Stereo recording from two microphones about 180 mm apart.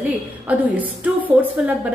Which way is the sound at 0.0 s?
10° right (ahead or behind).